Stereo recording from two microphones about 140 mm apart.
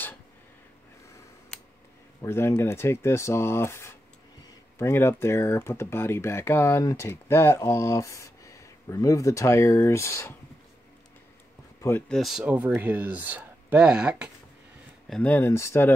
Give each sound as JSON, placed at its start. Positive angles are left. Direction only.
{"t": 2.2, "sound": "speech", "side_deg": 20}
{"t": 12.1, "sound": "speech", "side_deg": 0}
{"t": 15.0, "sound": "speech", "side_deg": 10}